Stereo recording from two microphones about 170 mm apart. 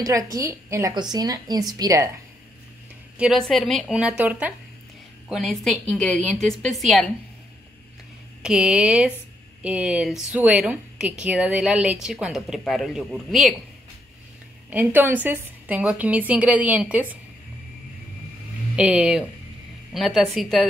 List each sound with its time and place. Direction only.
0.0 s a woman's voice: 20° right (ahead or behind)
3.2 s a woman's voice: centre (ahead or behind)
8.4 s a woman's voice: 5° right (ahead or behind)
14.7 s a woman's voice: 10° right (ahead or behind)
18.8 s a woman's voice: 5° right (ahead or behind)